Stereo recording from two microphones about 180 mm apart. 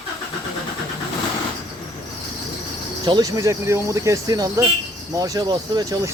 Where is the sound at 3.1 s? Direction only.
20° right (ahead or behind).